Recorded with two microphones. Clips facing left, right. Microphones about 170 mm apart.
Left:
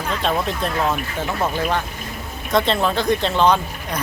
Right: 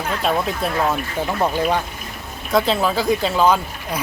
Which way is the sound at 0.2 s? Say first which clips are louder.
Right 1 dB; 5° right (ahead or behind).